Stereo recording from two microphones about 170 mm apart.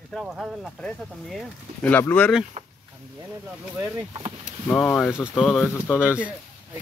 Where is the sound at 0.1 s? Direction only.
5° right (ahead or behind).